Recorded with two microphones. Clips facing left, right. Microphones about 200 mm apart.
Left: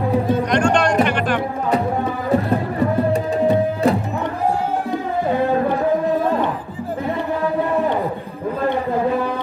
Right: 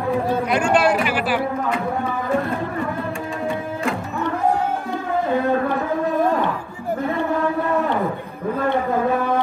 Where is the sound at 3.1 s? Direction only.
40° left (ahead or behind).